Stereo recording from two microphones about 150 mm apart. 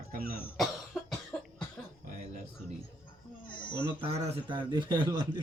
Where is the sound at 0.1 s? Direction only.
75° right (ahead or behind).